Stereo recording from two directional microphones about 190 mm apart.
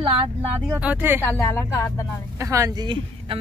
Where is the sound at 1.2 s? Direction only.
15° left (ahead or behind).